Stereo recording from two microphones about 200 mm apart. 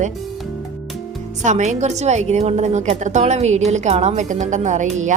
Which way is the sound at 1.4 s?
35° right (ahead or behind).